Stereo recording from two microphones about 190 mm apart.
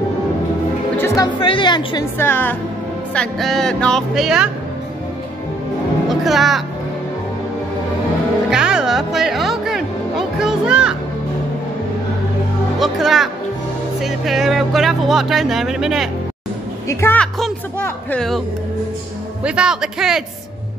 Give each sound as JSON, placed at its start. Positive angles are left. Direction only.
{"t": 0.9, "sound": "speech", "side_deg": 15}
{"t": 2.1, "sound": "speech", "side_deg": 10}
{"t": 3.2, "sound": "speech", "side_deg": 0}
{"t": 6.0, "sound": "speech", "side_deg": 0}
{"t": 8.5, "sound": "music", "side_deg": -5}
{"t": 12.7, "sound": "speech", "side_deg": 0}
{"t": 16.8, "sound": "speech", "side_deg": 15}
{"t": 19.4, "sound": "speech", "side_deg": -5}